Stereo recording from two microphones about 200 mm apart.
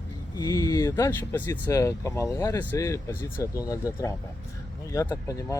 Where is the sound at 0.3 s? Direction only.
20° left (ahead or behind).